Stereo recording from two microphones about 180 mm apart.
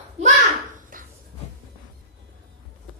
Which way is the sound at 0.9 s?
50° right (ahead or behind).